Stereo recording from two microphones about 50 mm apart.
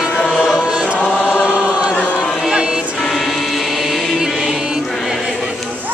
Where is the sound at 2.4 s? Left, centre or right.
Centre.